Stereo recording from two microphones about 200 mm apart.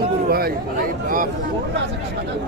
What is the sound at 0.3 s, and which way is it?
Chatter, 50° right (ahead or behind).